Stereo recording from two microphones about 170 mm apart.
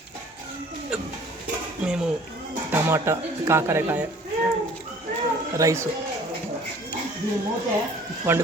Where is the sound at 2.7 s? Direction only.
15° right (ahead or behind).